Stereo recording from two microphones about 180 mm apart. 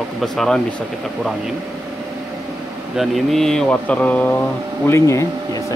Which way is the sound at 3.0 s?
Centre (ahead or behind).